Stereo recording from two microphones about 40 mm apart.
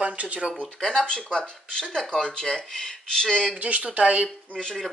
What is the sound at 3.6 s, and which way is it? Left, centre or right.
Speech, right.